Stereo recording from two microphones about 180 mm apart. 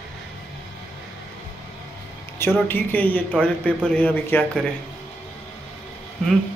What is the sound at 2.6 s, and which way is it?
Speech, 10° left (ahead or behind).